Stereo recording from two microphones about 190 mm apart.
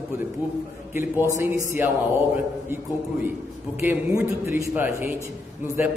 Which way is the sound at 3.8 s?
10° right (ahead or behind).